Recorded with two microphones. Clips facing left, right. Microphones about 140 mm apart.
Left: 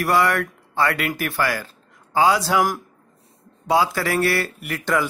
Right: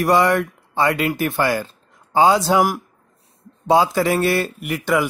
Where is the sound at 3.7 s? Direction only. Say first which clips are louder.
Right 4 dB; 20° right (ahead or behind).